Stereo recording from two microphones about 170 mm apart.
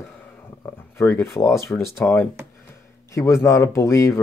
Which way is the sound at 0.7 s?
15° left (ahead or behind).